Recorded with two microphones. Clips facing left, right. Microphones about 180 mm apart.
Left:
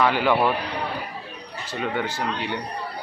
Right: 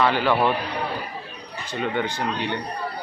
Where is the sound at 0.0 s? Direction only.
10° left (ahead or behind).